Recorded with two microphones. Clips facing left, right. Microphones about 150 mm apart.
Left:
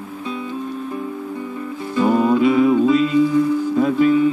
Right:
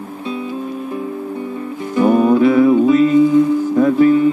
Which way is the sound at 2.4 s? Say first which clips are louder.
Right 3 dB; 20° left (ahead or behind).